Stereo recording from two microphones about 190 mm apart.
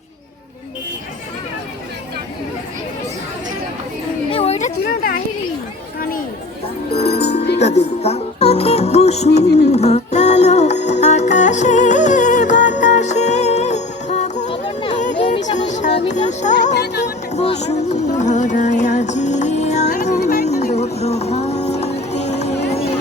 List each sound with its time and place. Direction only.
4.3 s a sound: 30° left (ahead or behind); by 5.2 s 45° left (ahead or behind)
6.9 s music: 30° left (ahead or behind)
14.5 s a sound: 25° left (ahead or behind)
15.2 s music: 40° left (ahead or behind)
16.7 s music: 60° left (ahead or behind)
17.3 s music: 35° left (ahead or behind)